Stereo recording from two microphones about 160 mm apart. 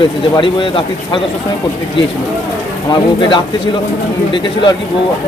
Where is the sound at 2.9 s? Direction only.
30° left (ahead or behind).